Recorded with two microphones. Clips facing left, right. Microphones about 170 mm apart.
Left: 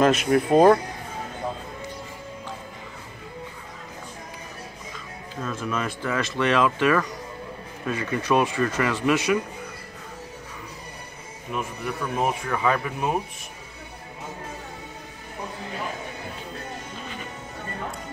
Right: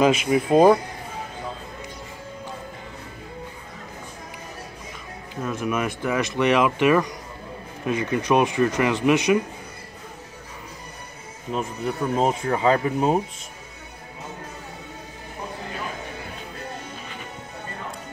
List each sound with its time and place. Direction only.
0.0 s speech: 5° right (ahead or behind)
5.3 s speech: 15° right (ahead or behind)
11.5 s speech: 25° right (ahead or behind)